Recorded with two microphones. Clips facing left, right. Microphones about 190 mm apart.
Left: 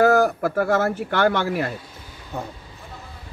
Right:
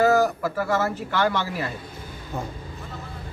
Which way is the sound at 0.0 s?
55° left (ahead or behind).